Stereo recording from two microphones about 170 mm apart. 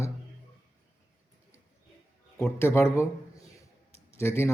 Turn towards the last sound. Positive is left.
turn(degrees=15)  # may be behind; listen again after turning